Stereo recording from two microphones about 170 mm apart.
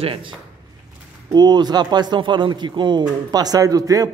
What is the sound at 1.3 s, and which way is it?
Speech, 25° right (ahead or behind).